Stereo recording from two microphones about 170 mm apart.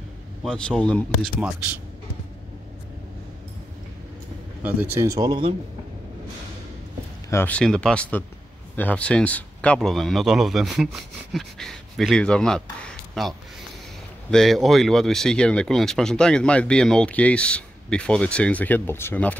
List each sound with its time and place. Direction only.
0.4 s speech: 5° left (ahead or behind)
1.4 s speech: 5° right (ahead or behind)
5.0 s speech: 20° right (ahead or behind)
7.2 s speech: 10° left (ahead or behind)
14.3 s speech: centre (ahead or behind)